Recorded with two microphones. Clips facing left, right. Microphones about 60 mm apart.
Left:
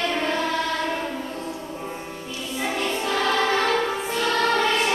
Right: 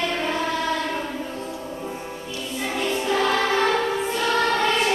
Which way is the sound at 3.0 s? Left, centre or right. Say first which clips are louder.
Right 2 dB; centre.